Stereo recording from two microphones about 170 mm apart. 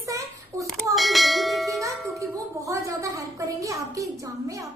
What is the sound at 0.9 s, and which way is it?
Bell, centre (ahead or behind).